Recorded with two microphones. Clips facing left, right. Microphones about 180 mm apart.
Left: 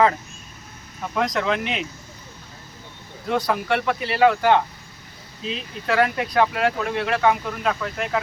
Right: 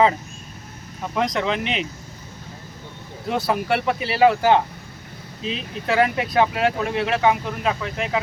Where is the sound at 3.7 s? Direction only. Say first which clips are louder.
Right 1 dB; 5° right (ahead or behind).